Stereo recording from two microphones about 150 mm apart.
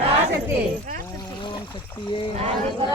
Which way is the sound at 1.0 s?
25° left (ahead or behind).